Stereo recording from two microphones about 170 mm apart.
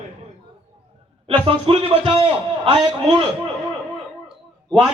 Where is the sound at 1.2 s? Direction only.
35° right (ahead or behind).